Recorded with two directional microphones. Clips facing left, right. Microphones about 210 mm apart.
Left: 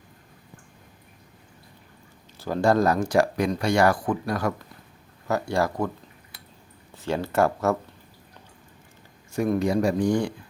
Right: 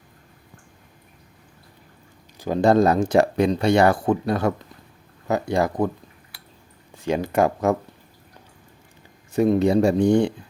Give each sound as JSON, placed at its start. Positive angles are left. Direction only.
{"t": 2.4, "sound": "speech", "side_deg": -20}
{"t": 6.9, "sound": "speech", "side_deg": -15}
{"t": 9.3, "sound": "speech", "side_deg": -25}